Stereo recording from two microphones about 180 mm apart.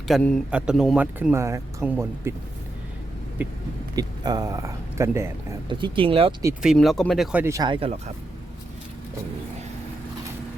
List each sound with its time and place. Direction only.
0.1 s speech: 5° left (ahead or behind); by 2.3 s 15° right (ahead or behind)
3.9 s speech: 20° right (ahead or behind)
5.6 s speech: 25° right (ahead or behind)
6.6 s speech: centre (ahead or behind)
7.4 s speech: 20° right (ahead or behind)